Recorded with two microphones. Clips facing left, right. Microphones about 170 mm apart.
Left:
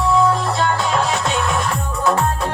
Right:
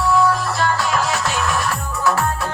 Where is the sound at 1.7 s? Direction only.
20° left (ahead or behind).